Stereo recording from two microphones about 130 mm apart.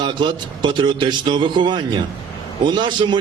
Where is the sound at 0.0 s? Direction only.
35° right (ahead or behind).